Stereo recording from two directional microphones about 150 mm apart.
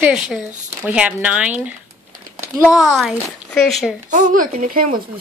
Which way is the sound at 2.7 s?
Centre (ahead or behind).